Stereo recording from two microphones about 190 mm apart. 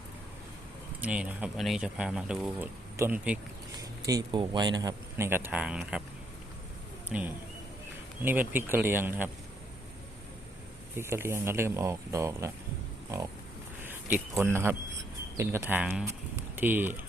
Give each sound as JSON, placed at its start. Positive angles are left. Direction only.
{"t": 1.0, "sound": "speech", "side_deg": -5}
{"t": 7.1, "sound": "speech", "side_deg": 0}
{"t": 10.9, "sound": "speech", "side_deg": -15}
{"t": 13.8, "sound": "speech", "side_deg": -10}